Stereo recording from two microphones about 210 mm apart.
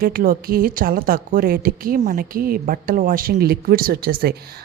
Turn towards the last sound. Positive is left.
turn(degrees=-45)  # may be behind; listen again after turning